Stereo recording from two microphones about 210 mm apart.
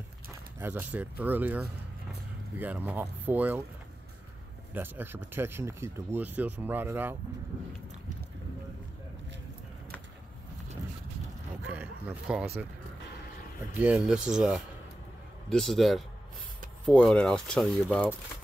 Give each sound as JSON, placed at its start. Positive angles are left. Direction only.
{"t": 0.6, "sound": "speech", "side_deg": -10}
{"t": 4.7, "sound": "speech", "side_deg": -10}
{"t": 11.6, "sound": "a sound", "side_deg": -5}
{"t": 13.7, "sound": "speech", "side_deg": -5}